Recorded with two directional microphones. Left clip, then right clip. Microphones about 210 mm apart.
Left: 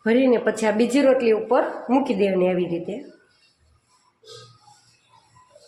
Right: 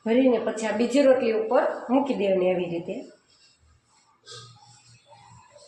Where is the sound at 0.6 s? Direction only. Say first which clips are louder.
Left 3 dB; 50° left (ahead or behind).